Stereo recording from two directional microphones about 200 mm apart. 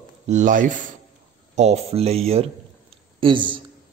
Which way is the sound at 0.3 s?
40° right (ahead or behind).